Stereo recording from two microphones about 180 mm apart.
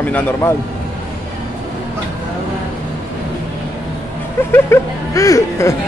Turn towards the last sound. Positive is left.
turn(degrees=15)  # may be behind; listen again after turning